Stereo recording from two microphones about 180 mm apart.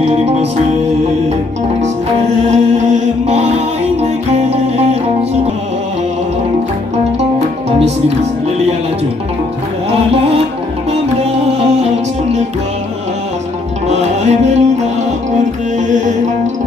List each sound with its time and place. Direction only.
0.0 s music: 35° right (ahead or behind)
2.4 s music: 40° right (ahead or behind)
13.8 s music: 40° right (ahead or behind)